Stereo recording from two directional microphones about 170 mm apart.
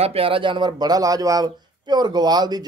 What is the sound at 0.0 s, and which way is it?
A man's voice, 35° right (ahead or behind).